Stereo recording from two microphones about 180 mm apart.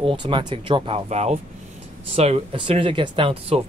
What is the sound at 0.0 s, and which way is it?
Speech, 25° right (ahead or behind).